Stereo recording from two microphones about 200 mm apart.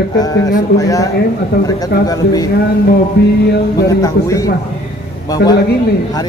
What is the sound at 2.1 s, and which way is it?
Speech, 20° left (ahead or behind).